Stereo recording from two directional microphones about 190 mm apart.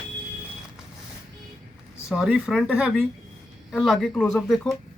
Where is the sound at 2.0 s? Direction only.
5° right (ahead or behind).